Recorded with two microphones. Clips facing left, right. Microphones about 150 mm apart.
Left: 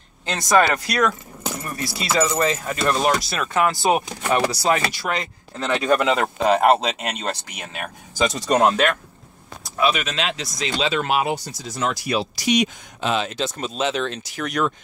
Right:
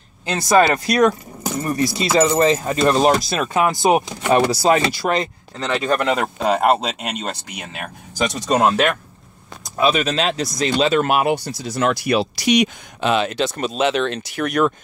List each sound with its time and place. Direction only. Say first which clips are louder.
0.7 s speech: right 5 dB; 20° right (ahead or behind)
3.5 s speech: right 3 dB; 15° right (ahead or behind)
4.3 s speech: right 5 dB; 30° right (ahead or behind)
5.8 s speech: even; 5° left (ahead or behind)
9.8 s speech: right 4 dB; 30° right (ahead or behind); by 14.7 s 55° right (ahead or behind)